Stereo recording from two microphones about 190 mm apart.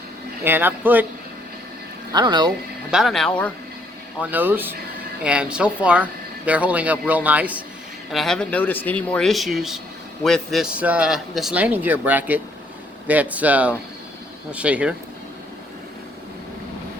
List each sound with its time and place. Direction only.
0.4 s speech: 10° right (ahead or behind)
2.1 s speech: 20° right (ahead or behind)
2.9 s speech: centre (ahead or behind)
4.2 s speech: 10° right (ahead or behind)